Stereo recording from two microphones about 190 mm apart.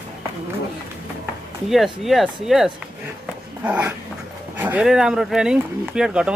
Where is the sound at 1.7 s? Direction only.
Centre (ahead or behind).